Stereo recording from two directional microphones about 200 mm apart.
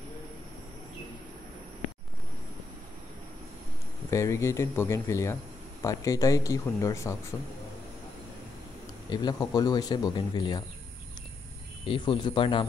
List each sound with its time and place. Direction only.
4.1 s speech: 15° left (ahead or behind)
9.1 s speech: 20° left (ahead or behind)
11.8 s speech: 25° left (ahead or behind)